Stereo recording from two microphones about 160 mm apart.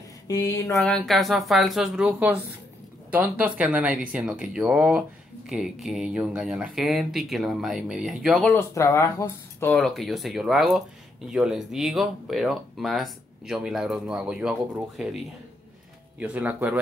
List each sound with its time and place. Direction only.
0.3 s a sound: 20° left (ahead or behind)
0.7 s speech: 5° left (ahead or behind)
8.5 s speech: 20° left (ahead or behind)
9.7 s speech: centre (ahead or behind)
16.2 s speech: 10° right (ahead or behind)